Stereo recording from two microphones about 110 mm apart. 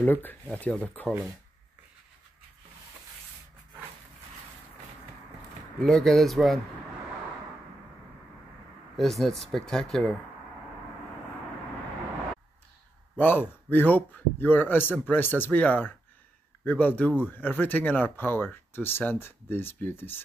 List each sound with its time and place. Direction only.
0.0 s speech: 15° left (ahead or behind)
5.8 s speech: 5° left (ahead or behind)
8.9 s speech: centre (ahead or behind)
13.2 s speech: 20° left (ahead or behind)